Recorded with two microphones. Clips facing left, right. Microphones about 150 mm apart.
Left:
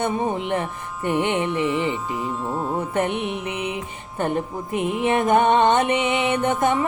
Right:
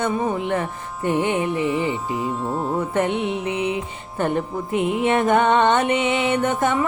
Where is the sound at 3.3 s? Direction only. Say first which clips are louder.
Right 4 dB; 25° right (ahead or behind).